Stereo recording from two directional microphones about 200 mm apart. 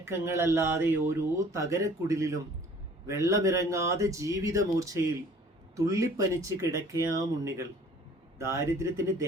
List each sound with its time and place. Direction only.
0.0 s speech: 15° right (ahead or behind)